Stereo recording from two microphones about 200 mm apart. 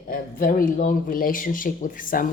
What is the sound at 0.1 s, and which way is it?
Speech, 45° left (ahead or behind).